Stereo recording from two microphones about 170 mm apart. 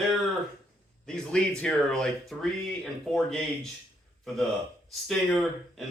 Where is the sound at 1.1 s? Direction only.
5° left (ahead or behind).